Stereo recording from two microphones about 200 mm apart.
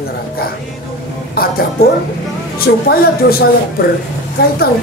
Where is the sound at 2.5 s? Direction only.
50° left (ahead or behind).